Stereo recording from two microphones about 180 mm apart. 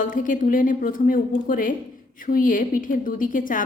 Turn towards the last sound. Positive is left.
turn(degrees=50)  # may be behind; listen again after turning